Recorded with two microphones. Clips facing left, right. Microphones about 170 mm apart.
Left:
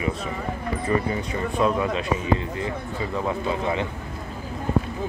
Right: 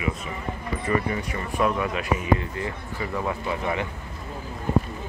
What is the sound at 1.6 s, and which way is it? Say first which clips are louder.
Speech: left 1 dB; 25° left (ahead or behind).